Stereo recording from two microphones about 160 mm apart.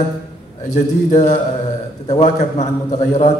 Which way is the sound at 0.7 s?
50° left (ahead or behind).